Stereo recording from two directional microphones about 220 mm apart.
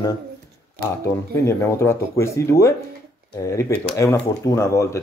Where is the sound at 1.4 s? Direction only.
10° left (ahead or behind).